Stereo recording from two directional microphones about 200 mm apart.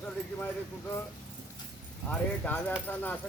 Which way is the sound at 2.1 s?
5° left (ahead or behind).